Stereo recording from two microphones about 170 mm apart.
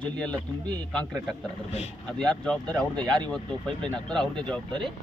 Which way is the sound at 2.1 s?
5° left (ahead or behind).